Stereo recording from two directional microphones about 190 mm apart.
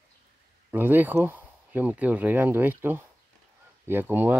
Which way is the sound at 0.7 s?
10° right (ahead or behind).